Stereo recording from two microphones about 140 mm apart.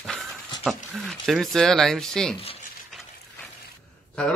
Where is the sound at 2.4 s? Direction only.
45° left (ahead or behind).